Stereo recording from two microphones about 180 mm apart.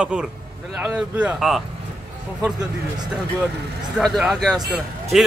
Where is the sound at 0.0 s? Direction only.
5° right (ahead or behind).